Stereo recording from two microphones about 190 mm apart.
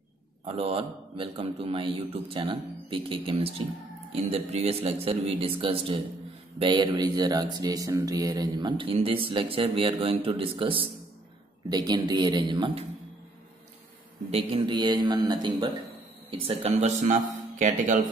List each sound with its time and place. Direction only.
0.5 s a man's voice: 30° right (ahead or behind)
14.3 s a man's voice: 25° right (ahead or behind)